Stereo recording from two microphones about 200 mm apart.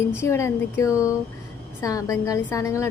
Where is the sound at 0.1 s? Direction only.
15° left (ahead or behind).